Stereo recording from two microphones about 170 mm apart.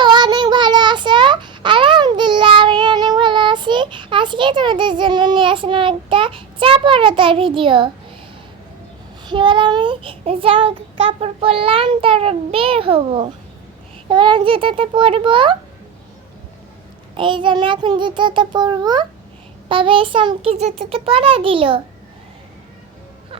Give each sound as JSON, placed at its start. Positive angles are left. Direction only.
{"t": 0.0, "sound": "child singing", "side_deg": -25}
{"t": 9.2, "sound": "child singing", "side_deg": -30}
{"t": 14.1, "sound": "a child's voice", "side_deg": -25}
{"t": 17.2, "sound": "a child's voice", "side_deg": -30}
{"t": 19.6, "sound": "child singing", "side_deg": -30}